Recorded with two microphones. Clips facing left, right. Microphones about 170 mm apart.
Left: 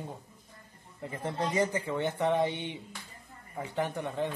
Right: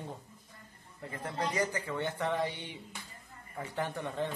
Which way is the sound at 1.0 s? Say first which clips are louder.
Left 3 dB; 25° left (ahead or behind).